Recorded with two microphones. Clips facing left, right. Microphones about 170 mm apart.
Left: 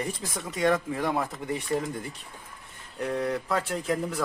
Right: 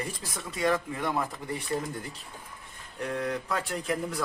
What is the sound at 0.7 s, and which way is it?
Speech, centre (ahead or behind).